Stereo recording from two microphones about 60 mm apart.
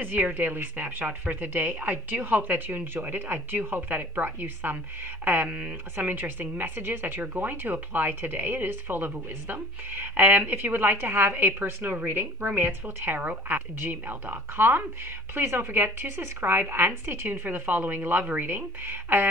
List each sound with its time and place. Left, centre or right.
0.0 s speech: right